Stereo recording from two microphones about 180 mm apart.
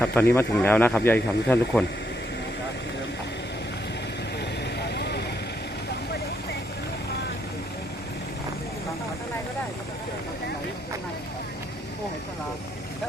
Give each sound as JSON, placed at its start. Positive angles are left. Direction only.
{"t": 0.0, "sound": "speech", "side_deg": 10}
{"t": 4.8, "sound": "vehicle", "side_deg": 65}